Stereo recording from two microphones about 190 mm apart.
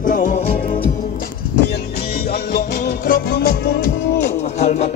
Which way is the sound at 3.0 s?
50° left (ahead or behind).